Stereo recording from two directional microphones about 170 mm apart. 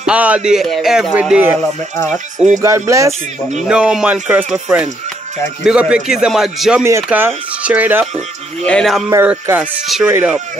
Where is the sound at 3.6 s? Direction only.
5° right (ahead or behind).